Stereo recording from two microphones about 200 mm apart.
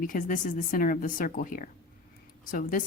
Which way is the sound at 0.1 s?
40° left (ahead or behind).